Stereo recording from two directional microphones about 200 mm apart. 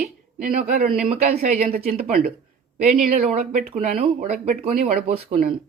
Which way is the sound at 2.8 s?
45° right (ahead or behind).